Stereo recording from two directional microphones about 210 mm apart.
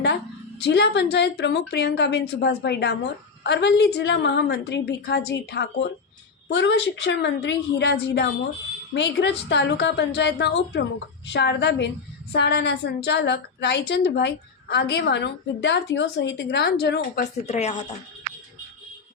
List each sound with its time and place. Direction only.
0.6 s a woman's voice: 55° left (ahead or behind)
17.4 s speech: 30° left (ahead or behind)